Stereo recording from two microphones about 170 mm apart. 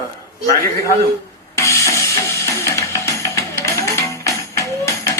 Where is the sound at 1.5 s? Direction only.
20° left (ahead or behind).